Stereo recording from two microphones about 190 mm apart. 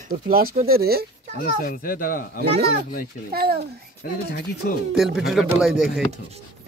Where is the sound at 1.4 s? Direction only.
50° left (ahead or behind).